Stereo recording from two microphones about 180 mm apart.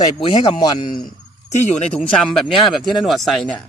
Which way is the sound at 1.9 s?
Centre (ahead or behind).